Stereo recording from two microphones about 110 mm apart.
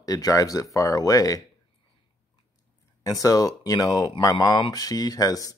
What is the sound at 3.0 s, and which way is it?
Speech, 30° left (ahead or behind).